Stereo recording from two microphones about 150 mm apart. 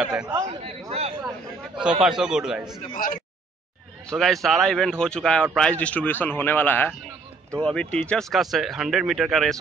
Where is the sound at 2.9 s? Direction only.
70° left (ahead or behind).